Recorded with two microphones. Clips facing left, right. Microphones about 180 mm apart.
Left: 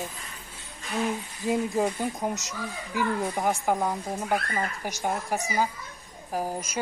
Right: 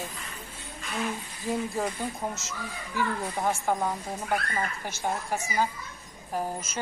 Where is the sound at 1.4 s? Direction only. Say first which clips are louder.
Left 4 dB; 15° left (ahead or behind).